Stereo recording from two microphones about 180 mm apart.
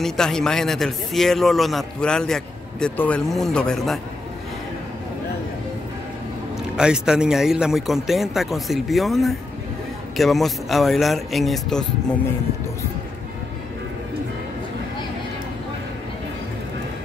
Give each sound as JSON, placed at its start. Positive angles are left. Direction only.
{"t": 0.0, "sound": "a man's voice", "side_deg": 5}
{"t": 6.8, "sound": "a man's voice", "side_deg": -5}